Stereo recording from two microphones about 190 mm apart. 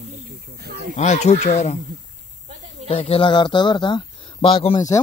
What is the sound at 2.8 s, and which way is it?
Speech, 30° left (ahead or behind).